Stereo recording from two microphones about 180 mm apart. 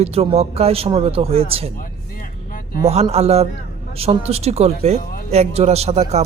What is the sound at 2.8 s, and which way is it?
Speech, 35° right (ahead or behind).